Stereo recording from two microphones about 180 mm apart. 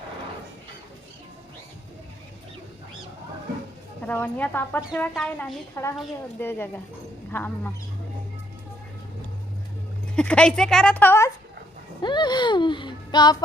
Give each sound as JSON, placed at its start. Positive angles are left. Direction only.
{"t": 4.0, "sound": "a woman's voice", "side_deg": 10}
{"t": 5.8, "sound": "speech", "side_deg": 15}
{"t": 10.2, "sound": "a woman's voice", "side_deg": 5}
{"t": 12.0, "sound": "speech", "side_deg": 25}